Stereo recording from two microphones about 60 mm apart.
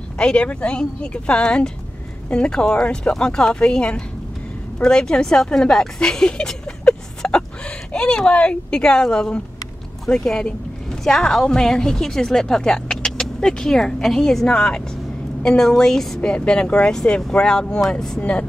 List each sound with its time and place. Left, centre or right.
0.2 s a woman's voice: centre
7.2 s a sound: centre
7.9 s a woman's voice: centre